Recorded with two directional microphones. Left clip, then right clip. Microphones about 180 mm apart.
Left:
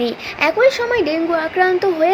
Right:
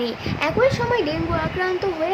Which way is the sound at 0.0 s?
25° left (ahead or behind).